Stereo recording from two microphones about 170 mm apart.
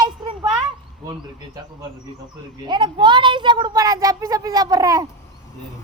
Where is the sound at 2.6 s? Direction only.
25° right (ahead or behind).